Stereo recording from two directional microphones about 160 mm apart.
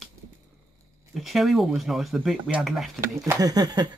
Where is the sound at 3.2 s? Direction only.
25° right (ahead or behind).